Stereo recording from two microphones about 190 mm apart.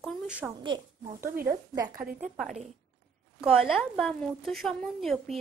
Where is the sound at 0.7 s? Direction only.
20° right (ahead or behind).